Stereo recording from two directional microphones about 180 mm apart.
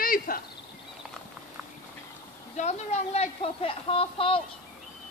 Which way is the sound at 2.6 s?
40° left (ahead or behind).